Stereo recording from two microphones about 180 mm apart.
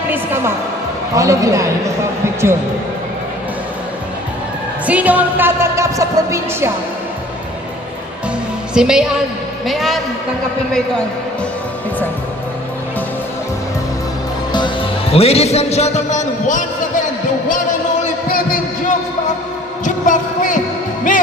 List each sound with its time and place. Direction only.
0.1 s speech: 10° right (ahead or behind)
4.9 s speech: 10° right (ahead or behind)
8.7 s a woman's voice: 5° right (ahead or behind)
14.5 s a man's voice: 25° left (ahead or behind); by 16.6 s 45° left (ahead or behind)
18.3 s a sound: 55° left (ahead or behind)